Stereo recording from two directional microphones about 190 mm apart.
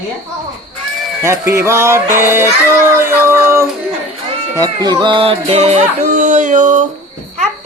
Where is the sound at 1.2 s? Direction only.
15° right (ahead or behind).